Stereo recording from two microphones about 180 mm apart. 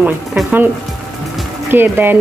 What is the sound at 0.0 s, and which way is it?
Speech, 5° right (ahead or behind).